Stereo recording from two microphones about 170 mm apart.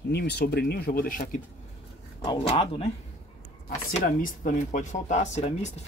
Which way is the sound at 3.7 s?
50° left (ahead or behind).